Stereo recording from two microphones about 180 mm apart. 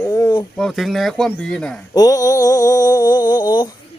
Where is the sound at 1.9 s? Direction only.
20° left (ahead or behind).